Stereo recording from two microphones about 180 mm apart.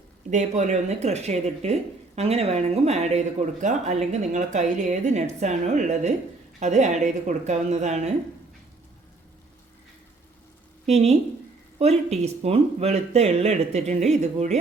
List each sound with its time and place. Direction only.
0.3 s speech: 40° right (ahead or behind)
10.8 s speech: 35° right (ahead or behind)